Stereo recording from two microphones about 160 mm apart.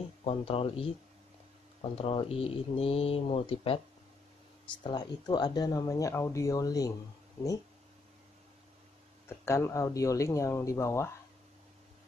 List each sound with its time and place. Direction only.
0.2 s speech: 40° left (ahead or behind); by 6.9 s 20° left (ahead or behind)
9.4 s speech: 15° left (ahead or behind)